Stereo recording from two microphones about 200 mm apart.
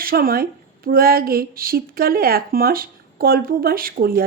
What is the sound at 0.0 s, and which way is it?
Speech, 45° right (ahead or behind).